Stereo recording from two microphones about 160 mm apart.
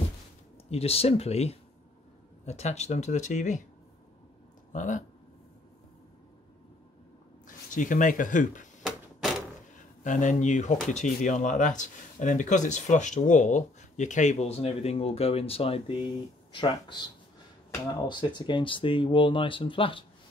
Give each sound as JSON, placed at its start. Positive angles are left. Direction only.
{"t": 0.7, "sound": "speech", "side_deg": 40}
{"t": 4.7, "sound": "speech", "side_deg": 55}
{"t": 7.4, "sound": "speech", "side_deg": 55}
{"t": 10.0, "sound": "speech", "side_deg": 50}
{"t": 18.0, "sound": "speech", "side_deg": 30}